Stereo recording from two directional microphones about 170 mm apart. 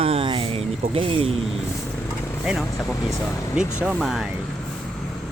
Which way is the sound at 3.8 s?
Centre (ahead or behind).